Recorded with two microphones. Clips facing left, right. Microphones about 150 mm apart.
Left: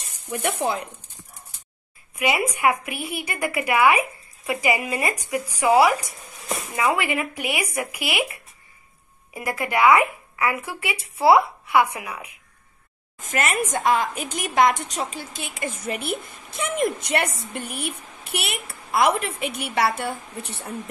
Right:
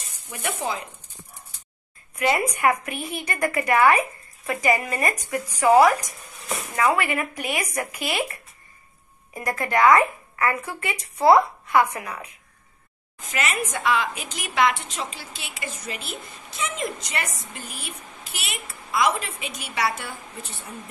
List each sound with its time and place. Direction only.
0.3 s a woman's voice: 60° left (ahead or behind)
2.1 s speech: 10° left (ahead or behind)
13.2 s a woman's voice: 45° left (ahead or behind); by 20.9 s 70° left (ahead or behind)